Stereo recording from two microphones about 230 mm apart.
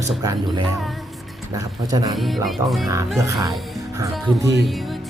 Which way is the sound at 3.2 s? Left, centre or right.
Centre.